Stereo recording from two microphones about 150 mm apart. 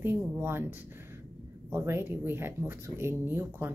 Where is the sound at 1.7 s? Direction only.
15° right (ahead or behind).